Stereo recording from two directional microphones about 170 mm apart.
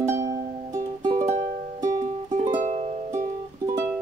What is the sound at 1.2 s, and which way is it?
Music, 45° right (ahead or behind).